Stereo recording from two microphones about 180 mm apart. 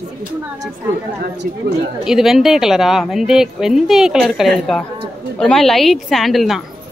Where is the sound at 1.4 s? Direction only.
60° right (ahead or behind).